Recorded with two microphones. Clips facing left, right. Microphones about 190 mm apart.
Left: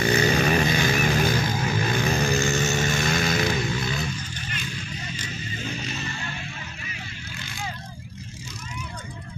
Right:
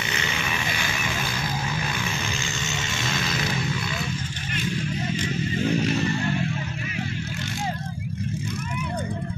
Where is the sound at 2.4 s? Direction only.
55° left (ahead or behind).